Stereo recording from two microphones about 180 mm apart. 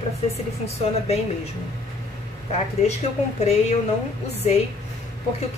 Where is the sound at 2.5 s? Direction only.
35° left (ahead or behind).